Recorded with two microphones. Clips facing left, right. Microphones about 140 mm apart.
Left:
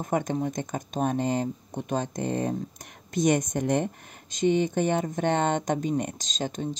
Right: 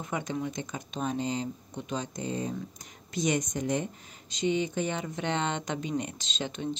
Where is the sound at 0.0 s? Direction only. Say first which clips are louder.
Left 6 dB; 50° left (ahead or behind).